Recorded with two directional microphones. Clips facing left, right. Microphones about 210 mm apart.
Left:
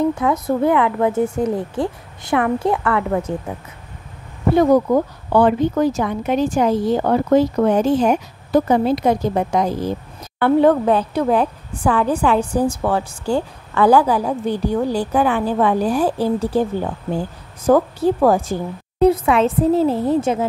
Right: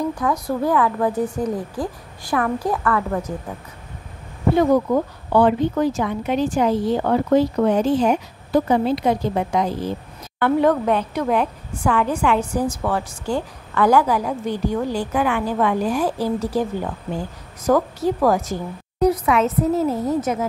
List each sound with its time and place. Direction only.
0.0 s a woman's voice: 25° left (ahead or behind)
4.6 s a woman's voice: 45° left (ahead or behind)
10.4 s a woman's voice: 30° left (ahead or behind)